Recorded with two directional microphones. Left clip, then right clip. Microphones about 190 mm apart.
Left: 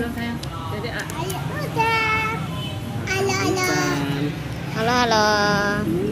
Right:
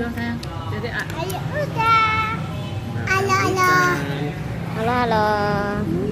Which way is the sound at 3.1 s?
50° right (ahead or behind).